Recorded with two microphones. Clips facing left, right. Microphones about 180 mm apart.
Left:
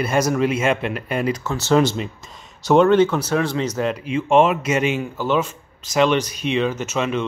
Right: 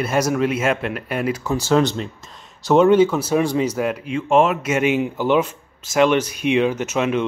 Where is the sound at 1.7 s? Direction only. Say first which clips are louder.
Left 1 dB; 5° left (ahead or behind).